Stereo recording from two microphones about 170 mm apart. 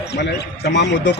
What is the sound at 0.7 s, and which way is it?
Speech, 90° left.